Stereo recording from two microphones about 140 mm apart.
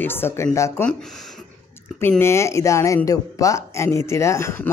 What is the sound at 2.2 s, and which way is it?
Speech, 20° left (ahead or behind).